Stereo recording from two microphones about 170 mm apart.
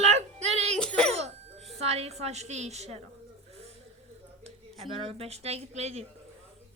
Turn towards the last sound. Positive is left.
turn(degrees=-40)  # may be behind; listen again after turning